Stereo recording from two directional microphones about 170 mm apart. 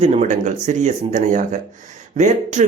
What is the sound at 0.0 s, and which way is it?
Speech, 40° right (ahead or behind).